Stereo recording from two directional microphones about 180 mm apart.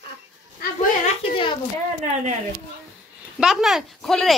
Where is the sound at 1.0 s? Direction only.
30° left (ahead or behind).